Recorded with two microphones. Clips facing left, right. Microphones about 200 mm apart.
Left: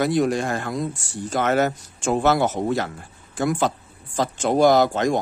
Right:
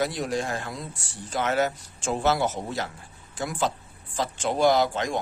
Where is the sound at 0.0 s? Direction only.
60° left (ahead or behind).